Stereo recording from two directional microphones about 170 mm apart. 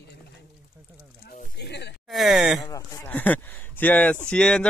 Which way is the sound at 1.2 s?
75° left (ahead or behind).